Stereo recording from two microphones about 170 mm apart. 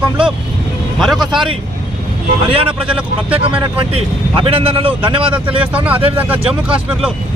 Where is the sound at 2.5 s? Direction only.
30° right (ahead or behind).